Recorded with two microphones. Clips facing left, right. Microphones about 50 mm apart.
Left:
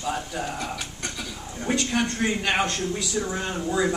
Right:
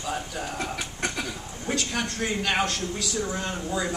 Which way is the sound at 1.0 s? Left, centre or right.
Right.